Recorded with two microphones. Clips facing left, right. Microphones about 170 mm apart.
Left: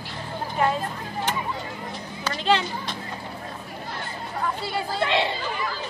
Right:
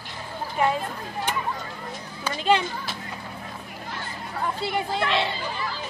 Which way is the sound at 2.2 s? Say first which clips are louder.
Right 1 dB; 10° right (ahead or behind).